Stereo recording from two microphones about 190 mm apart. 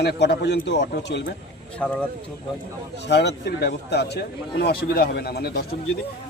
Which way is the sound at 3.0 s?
60° left (ahead or behind).